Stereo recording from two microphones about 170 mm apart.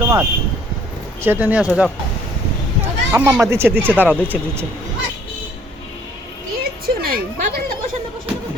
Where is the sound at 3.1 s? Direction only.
15° right (ahead or behind).